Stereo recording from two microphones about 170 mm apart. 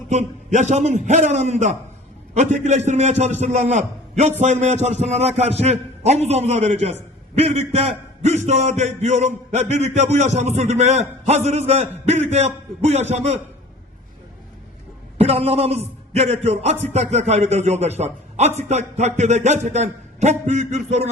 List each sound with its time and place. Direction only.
0.1 s a man's voice: 45° right (ahead or behind)
15.2 s a man's voice: 35° right (ahead or behind)